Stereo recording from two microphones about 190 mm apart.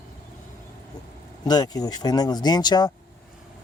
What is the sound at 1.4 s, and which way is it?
Speech, 20° left (ahead or behind).